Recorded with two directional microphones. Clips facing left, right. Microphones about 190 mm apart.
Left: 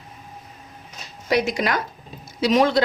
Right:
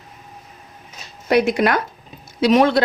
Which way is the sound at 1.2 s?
55° right (ahead or behind).